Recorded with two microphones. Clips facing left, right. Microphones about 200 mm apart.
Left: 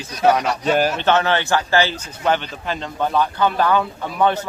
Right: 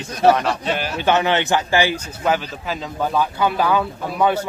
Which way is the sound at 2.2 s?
5° right (ahead or behind).